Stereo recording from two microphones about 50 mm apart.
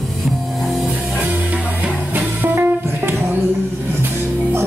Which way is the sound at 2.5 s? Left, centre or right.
Right.